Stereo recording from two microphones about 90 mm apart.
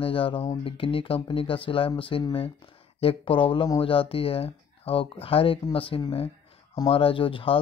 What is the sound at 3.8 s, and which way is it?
Speech, 90° left.